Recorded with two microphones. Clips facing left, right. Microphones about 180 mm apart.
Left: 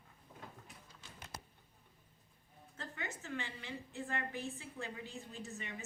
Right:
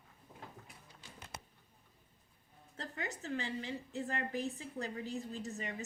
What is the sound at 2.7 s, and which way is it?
A woman's voice, 35° right (ahead or behind).